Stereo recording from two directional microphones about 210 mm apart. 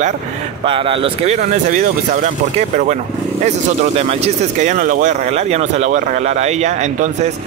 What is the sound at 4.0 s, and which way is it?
Speech, 30° right (ahead or behind).